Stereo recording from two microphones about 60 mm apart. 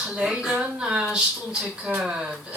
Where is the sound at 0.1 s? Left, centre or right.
Centre.